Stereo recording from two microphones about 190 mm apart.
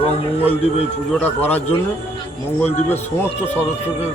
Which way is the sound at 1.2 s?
10° left (ahead or behind).